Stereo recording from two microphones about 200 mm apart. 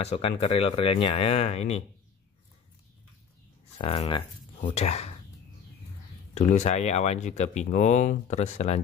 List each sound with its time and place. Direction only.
0.0 s speech: 30° left (ahead or behind)
3.7 s speech: 30° left (ahead or behind)
6.3 s speech: 35° left (ahead or behind)